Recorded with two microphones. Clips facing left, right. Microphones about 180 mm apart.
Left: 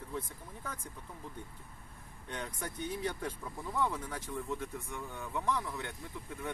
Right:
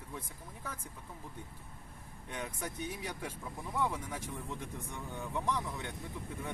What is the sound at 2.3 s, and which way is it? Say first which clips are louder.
Speech: even; 15° right (ahead or behind).